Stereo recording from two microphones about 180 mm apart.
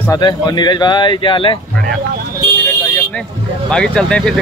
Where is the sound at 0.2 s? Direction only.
25° left (ahead or behind).